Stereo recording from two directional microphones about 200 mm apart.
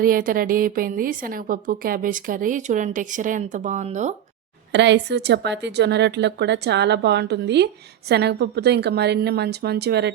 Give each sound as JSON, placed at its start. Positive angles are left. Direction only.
{"t": 0.0, "sound": "a woman's voice", "side_deg": -45}
{"t": 4.7, "sound": "a woman's voice", "side_deg": -60}